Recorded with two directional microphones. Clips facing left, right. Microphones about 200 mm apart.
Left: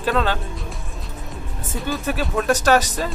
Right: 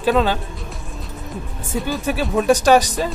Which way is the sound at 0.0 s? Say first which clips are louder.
Right 4 dB; 15° right (ahead or behind).